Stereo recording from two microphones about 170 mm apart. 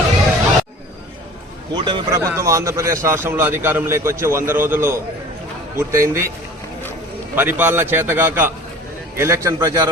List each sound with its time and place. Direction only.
1.7 s a man's voice: 30° right (ahead or behind)
2.2 s a man's voice: 15° right (ahead or behind)
7.3 s a man's voice: 10° right (ahead or behind)